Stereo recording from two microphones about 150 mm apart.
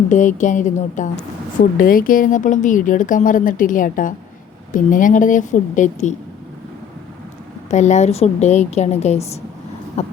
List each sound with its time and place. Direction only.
0.1 s a woman's voice: 55° left (ahead or behind)
1.8 s a woman's voice: 70° left (ahead or behind); by 6.1 s 55° left (ahead or behind)
7.7 s a woman's voice: 50° left (ahead or behind)